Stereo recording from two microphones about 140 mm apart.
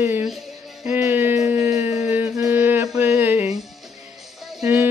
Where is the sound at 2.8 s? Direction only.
10° right (ahead or behind).